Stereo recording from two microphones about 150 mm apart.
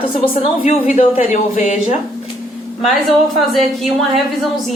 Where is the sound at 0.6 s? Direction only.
55° left (ahead or behind).